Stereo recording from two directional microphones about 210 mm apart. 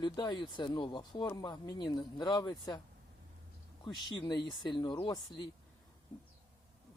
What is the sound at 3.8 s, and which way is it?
Speech, 20° left (ahead or behind).